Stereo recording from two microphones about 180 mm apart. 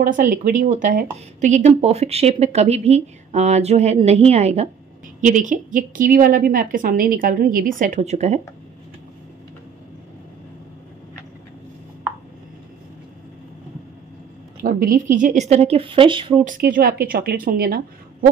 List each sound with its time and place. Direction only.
0.0 s a woman's voice: 45° right (ahead or behind)
14.6 s speech: 50° right (ahead or behind); by 16.3 s 30° right (ahead or behind)
16.4 s a woman's voice: 50° right (ahead or behind)